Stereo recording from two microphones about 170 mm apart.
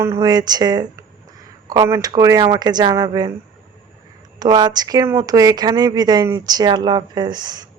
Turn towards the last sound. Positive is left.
turn(degrees=-25)  # may be behind; listen again after turning